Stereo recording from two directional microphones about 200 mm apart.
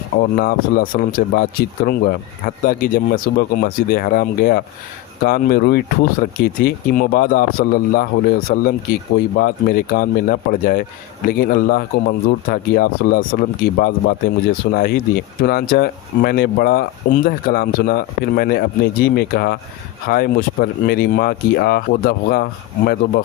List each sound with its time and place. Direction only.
0.2 s speech: 45° left (ahead or behind)